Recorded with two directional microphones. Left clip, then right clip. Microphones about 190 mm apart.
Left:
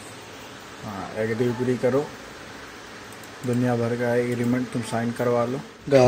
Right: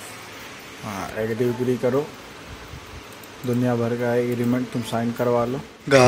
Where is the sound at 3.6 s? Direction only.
5° right (ahead or behind).